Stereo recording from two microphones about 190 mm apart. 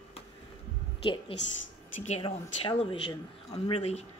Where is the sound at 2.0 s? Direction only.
30° left (ahead or behind).